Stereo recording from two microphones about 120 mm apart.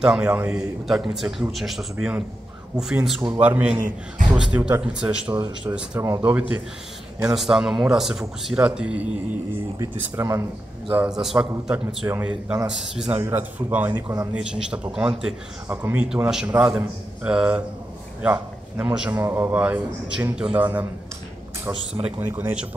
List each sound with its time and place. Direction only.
0.0 s a man's voice: 5° right (ahead or behind)
5.9 s speech: 25° right (ahead or behind)
7.3 s speech: 5° right (ahead or behind)
9.8 s speech: 25° right (ahead or behind)
10.9 s a man's voice: 10° right (ahead or behind)
13.2 s a man's voice: 20° right (ahead or behind)
18.2 s a sound: 10° right (ahead or behind)
18.9 s a man's voice: 10° right (ahead or behind)
22.0 s a man's voice: 15° right (ahead or behind)